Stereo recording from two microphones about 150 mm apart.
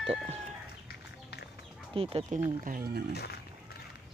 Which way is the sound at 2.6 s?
80° right.